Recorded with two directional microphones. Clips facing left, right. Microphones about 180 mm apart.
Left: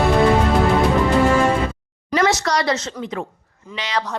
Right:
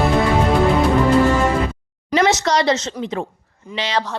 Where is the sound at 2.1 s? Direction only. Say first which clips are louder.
Right 2 dB; 25° right (ahead or behind).